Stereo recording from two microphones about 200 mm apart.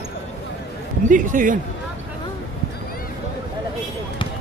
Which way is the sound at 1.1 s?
40° right (ahead or behind).